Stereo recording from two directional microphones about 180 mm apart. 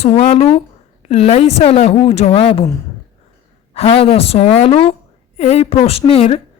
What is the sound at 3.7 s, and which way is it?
A woman's voice, 35° left (ahead or behind).